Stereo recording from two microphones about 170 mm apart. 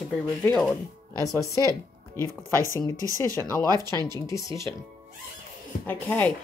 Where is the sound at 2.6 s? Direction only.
15° left (ahead or behind).